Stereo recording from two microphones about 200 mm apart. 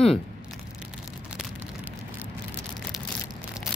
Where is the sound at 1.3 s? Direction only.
5° right (ahead or behind).